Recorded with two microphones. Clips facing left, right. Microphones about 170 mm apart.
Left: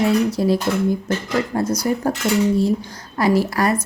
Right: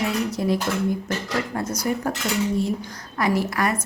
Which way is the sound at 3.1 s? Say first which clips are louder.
Left 5 dB; 30° left (ahead or behind).